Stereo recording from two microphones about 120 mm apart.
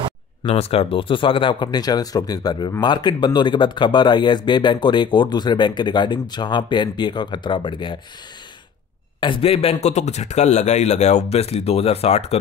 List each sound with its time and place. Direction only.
0.6 s speech: 55° left (ahead or behind)
9.2 s a man's voice: 50° left (ahead or behind)